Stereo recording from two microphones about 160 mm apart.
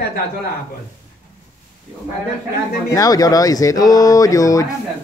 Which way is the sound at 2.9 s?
20° left (ahead or behind).